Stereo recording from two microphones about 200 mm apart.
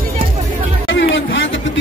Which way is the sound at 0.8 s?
65° left (ahead or behind).